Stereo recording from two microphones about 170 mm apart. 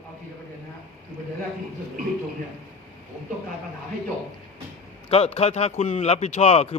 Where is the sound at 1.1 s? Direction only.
25° left (ahead or behind).